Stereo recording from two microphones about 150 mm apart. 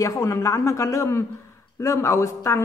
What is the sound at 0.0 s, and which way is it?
A woman's voice, 20° left (ahead or behind).